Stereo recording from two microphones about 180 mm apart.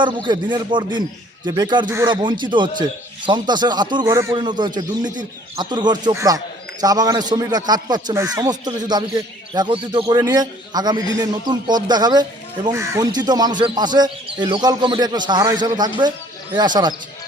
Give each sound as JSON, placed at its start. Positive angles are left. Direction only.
{"t": 0.0, "sound": "speech", "side_deg": -25}